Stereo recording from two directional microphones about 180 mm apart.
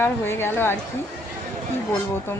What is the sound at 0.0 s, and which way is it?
Speech, 15° left (ahead or behind).